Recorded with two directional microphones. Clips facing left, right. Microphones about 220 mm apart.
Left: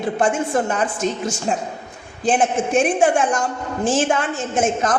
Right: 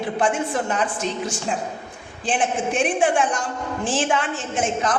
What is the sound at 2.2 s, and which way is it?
A woman's voice, 45° left (ahead or behind).